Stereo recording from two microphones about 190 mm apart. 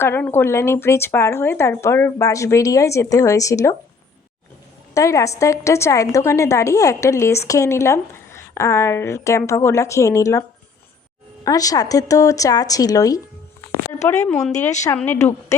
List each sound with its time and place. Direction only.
0.0 s a woman's voice: 10° left (ahead or behind)
4.9 s a woman's voice: 15° left (ahead or behind)
11.4 s a woman's voice: 20° left (ahead or behind)